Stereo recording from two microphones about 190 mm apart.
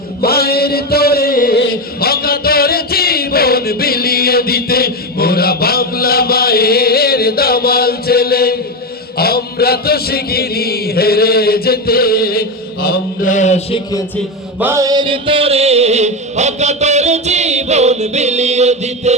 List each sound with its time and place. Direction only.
0.2 s music: 55° left (ahead or behind)
9.1 s chant: 55° left (ahead or behind); by 13.7 s 40° left (ahead or behind)
14.6 s music: 15° right (ahead or behind); by 19.1 s 35° right (ahead or behind)